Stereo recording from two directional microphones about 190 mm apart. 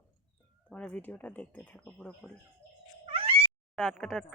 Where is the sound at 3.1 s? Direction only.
30° right (ahead or behind).